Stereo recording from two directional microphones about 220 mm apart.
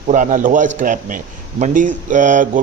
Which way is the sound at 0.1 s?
35° right (ahead or behind).